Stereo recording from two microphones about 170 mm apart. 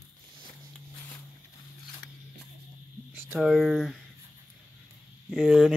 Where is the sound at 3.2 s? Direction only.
10° right (ahead or behind).